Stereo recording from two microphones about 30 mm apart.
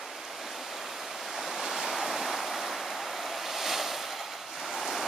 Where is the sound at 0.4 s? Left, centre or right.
Centre.